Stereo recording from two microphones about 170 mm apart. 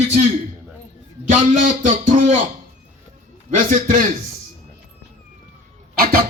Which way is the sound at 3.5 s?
50° right (ahead or behind).